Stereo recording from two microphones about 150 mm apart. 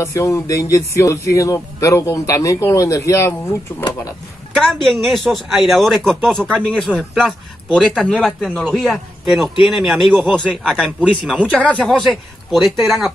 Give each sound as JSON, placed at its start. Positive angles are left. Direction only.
{"t": 0.0, "sound": "speech", "side_deg": 20}
{"t": 4.6, "sound": "a man's voice", "side_deg": 5}